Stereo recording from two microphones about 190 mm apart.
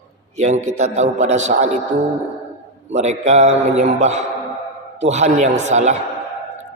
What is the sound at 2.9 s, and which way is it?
A man's voice, 35° right (ahead or behind).